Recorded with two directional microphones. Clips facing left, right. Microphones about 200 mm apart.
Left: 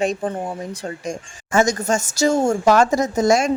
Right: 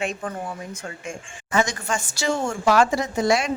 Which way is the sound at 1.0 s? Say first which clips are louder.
Left 6 dB; 40° left (ahead or behind).